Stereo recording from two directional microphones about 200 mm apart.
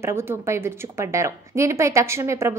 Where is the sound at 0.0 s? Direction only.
10° right (ahead or behind).